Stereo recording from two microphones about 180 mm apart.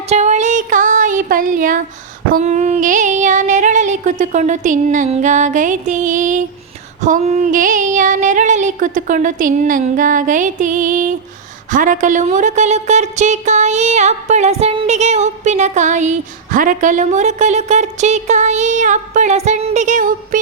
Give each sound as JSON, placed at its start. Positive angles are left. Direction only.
{"t": 0.1, "sound": "music", "side_deg": -40}
{"t": 2.3, "sound": "female singing", "side_deg": -40}
{"t": 11.7, "sound": "a woman's voice", "side_deg": -45}